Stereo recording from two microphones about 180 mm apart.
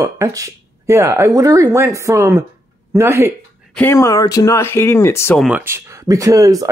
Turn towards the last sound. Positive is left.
turn(degrees=-20)  # may be behind; listen again after turning